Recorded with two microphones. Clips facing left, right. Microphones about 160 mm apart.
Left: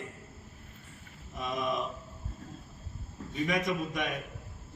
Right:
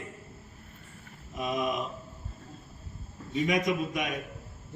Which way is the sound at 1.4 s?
20° right (ahead or behind).